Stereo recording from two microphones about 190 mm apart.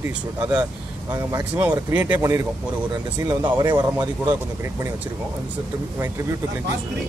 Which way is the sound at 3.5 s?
25° right (ahead or behind).